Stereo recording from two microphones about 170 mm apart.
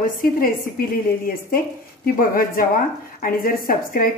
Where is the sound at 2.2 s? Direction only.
55° left (ahead or behind).